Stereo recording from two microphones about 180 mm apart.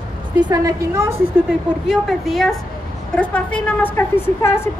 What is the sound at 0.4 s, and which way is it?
Speech, 20° right (ahead or behind).